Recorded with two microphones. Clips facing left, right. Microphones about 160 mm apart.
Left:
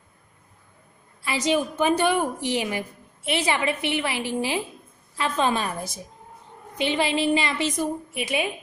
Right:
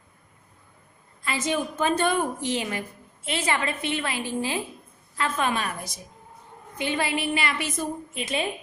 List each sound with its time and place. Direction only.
1.2 s a woman's voice: 15° left (ahead or behind)